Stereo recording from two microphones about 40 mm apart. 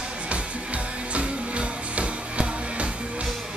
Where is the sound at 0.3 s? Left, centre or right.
Right.